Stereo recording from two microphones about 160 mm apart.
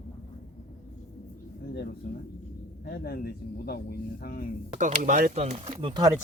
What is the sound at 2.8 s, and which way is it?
Speech, 70° left (ahead or behind).